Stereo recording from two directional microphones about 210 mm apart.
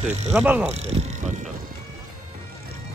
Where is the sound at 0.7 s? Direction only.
30° right (ahead or behind).